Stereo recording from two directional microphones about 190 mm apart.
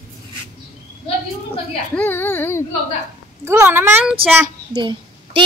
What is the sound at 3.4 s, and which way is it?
Speech, 10° right (ahead or behind).